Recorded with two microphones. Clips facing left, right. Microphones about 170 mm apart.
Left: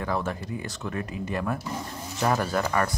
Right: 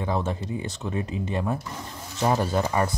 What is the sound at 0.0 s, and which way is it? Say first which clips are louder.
Speech: right 2 dB; 20° right (ahead or behind).